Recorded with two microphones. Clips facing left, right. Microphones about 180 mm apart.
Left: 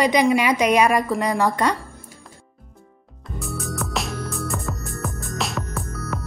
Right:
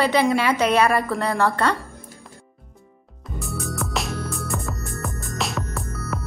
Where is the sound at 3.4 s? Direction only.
Centre (ahead or behind).